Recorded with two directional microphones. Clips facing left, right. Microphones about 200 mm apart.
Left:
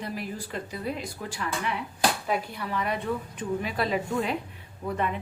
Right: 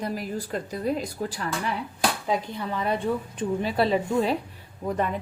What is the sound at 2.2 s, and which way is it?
A woman's voice, 25° right (ahead or behind).